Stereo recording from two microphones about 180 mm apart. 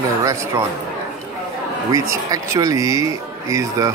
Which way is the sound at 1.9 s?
15° right (ahead or behind).